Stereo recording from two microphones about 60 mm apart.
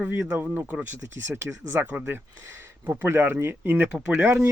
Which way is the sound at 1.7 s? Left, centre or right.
Right.